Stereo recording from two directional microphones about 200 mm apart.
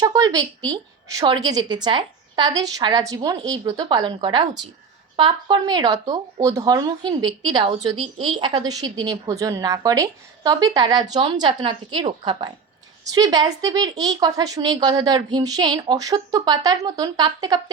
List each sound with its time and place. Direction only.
0.0 s a woman's voice: 20° right (ahead or behind)